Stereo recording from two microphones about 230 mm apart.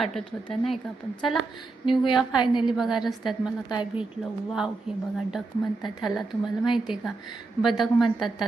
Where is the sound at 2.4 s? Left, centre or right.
Centre.